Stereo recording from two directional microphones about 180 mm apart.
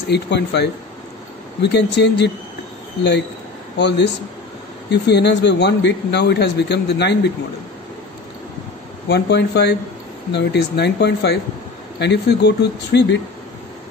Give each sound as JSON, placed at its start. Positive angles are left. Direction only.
{"t": 0.1, "sound": "speech", "side_deg": 70}
{"t": 3.7, "sound": "speech", "side_deg": 75}
{"t": 9.1, "sound": "speech", "side_deg": 70}